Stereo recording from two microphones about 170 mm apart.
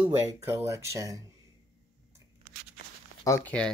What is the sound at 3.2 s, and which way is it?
Speech, 15° left (ahead or behind).